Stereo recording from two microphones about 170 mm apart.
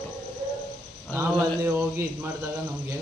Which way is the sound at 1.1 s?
15° right (ahead or behind).